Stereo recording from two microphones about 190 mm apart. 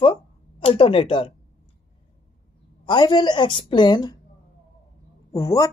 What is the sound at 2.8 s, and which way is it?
A woman's voice, 25° left (ahead or behind).